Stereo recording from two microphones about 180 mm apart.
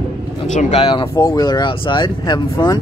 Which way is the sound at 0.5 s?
40° left (ahead or behind).